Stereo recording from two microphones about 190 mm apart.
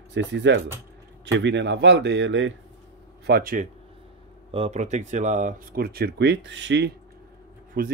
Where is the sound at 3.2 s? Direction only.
50° right (ahead or behind).